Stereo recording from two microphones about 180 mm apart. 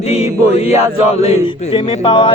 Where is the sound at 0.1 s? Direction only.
35° left (ahead or behind).